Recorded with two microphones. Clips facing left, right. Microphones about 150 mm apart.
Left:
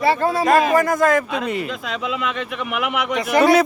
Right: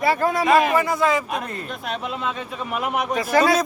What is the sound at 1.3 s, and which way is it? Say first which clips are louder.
Speech: left 5 dB; 85° left.